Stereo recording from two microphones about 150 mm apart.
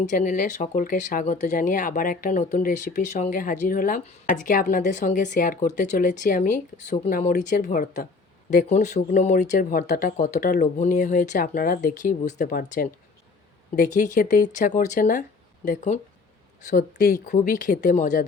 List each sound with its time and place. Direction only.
0.0 s speech: 55° left (ahead or behind)
16.7 s speech: 85° left
17.2 s speech: 60° left (ahead or behind)